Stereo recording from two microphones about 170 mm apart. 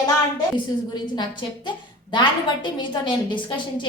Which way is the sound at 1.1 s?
25° left (ahead or behind).